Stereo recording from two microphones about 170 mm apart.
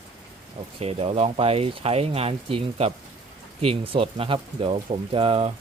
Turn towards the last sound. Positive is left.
turn(degrees=-35)  # may be behind; listen again after turning